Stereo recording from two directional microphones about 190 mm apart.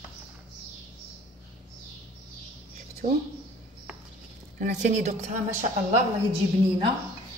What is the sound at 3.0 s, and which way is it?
Speech, 45° right (ahead or behind).